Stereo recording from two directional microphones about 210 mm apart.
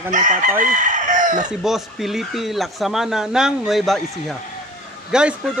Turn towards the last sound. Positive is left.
turn(degrees=-5)  # may be behind; listen again after turning